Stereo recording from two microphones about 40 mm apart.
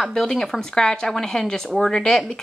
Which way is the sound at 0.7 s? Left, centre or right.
Centre.